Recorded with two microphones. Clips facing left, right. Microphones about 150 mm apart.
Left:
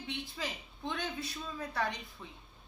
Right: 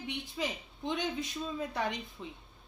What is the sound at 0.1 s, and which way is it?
A woman's voice, 20° right (ahead or behind).